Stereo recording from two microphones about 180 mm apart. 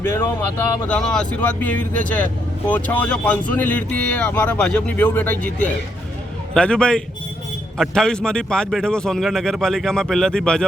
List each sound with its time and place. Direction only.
0.0 s speech: 10° left (ahead or behind)
5.5 s speech: 45° left (ahead or behind)
6.5 s speech: 5° left (ahead or behind)